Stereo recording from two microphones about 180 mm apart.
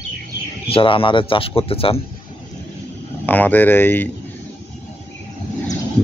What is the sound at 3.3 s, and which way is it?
Speech, 10° left (ahead or behind).